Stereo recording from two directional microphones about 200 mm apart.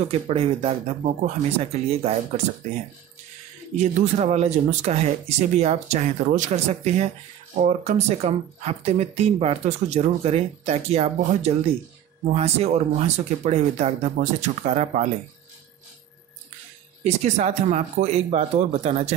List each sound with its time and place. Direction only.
0.3 s speech: 30° right (ahead or behind)
3.7 s speech: 35° right (ahead or behind)
17.0 s speech: 35° right (ahead or behind)